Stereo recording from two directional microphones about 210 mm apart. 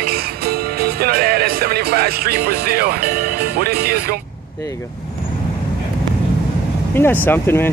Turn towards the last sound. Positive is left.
turn(degrees=10)  # may be behind; listen again after turning